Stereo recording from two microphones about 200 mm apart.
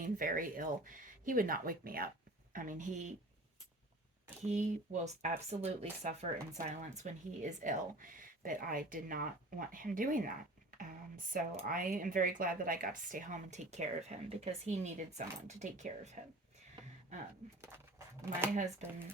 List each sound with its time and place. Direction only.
0.0 s speech: 45° right (ahead or behind)
4.4 s speech: 35° right (ahead or behind)
18.2 s speech: 15° right (ahead or behind)
18.5 s speech: 35° right (ahead or behind)